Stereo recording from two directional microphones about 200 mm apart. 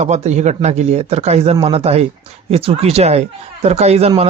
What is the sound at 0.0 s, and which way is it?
A man's voice, 35° right (ahead or behind).